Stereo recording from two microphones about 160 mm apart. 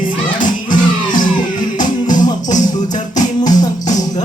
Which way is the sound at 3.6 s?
50° left (ahead or behind).